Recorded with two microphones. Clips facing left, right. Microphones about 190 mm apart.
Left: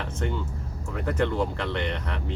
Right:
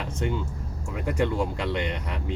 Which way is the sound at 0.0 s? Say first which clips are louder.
Right 1 dB; 15° right (ahead or behind).